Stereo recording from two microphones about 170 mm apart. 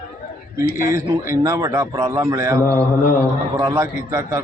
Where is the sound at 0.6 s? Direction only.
55° left (ahead or behind).